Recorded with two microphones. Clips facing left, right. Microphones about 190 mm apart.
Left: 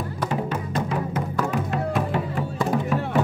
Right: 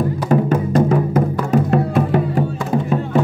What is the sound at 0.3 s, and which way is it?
Music, 45° right (ahead or behind).